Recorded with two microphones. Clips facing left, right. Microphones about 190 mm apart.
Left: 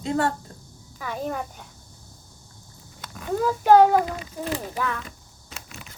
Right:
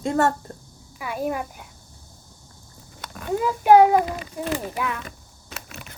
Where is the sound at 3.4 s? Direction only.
10° right (ahead or behind).